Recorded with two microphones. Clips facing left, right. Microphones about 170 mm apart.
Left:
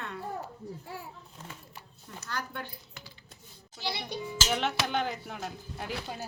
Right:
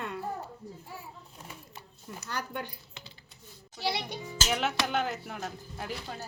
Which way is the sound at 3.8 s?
65° right (ahead or behind).